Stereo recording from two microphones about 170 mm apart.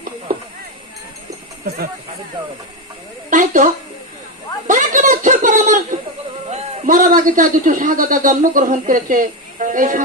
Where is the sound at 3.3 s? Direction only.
50° right (ahead or behind).